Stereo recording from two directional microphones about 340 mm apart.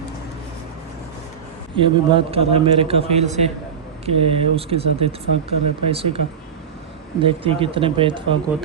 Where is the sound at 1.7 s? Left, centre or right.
Centre.